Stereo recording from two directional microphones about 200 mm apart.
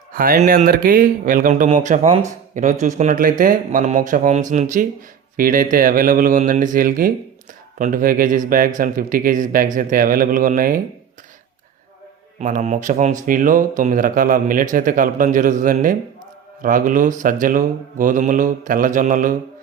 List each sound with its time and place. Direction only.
0.1 s speech: 45° right (ahead or behind)
12.4 s speech: 35° right (ahead or behind)